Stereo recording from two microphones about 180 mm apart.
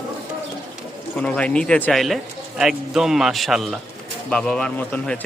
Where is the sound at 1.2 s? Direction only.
5° left (ahead or behind).